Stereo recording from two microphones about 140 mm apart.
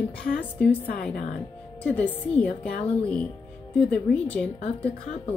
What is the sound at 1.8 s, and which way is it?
Speech, 10° left (ahead or behind).